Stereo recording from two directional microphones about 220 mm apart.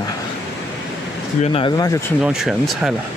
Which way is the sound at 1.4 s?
25° left (ahead or behind).